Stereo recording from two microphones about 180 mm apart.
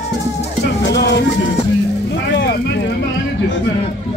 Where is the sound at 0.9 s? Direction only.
70° left (ahead or behind).